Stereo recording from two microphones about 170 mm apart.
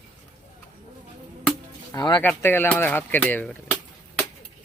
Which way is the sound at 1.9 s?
25° left (ahead or behind).